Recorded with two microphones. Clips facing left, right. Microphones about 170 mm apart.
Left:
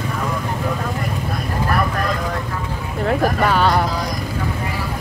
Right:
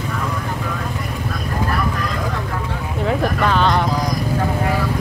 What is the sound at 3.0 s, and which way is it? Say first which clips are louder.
Vehicle: left 1 dB; 5° left (ahead or behind).